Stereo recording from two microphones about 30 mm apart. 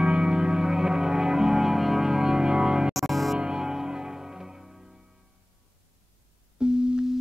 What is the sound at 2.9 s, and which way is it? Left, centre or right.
Music, centre.